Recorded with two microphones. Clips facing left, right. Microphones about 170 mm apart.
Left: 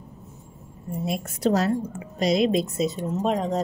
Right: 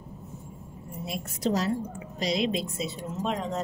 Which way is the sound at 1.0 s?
55° left (ahead or behind).